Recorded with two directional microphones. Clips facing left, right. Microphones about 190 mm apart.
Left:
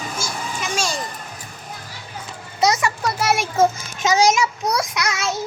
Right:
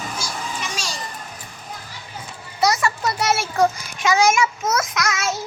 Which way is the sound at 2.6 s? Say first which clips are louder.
Left 1 dB; 15° left (ahead or behind).